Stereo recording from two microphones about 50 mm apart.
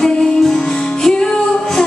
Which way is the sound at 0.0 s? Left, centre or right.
Centre.